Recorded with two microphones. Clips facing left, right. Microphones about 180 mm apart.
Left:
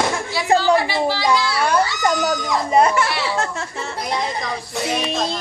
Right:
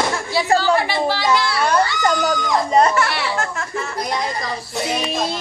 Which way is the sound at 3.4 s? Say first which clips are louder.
Right 1 dB; 30° left (ahead or behind).